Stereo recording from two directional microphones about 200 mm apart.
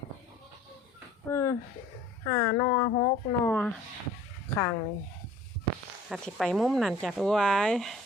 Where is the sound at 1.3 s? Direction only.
15° left (ahead or behind).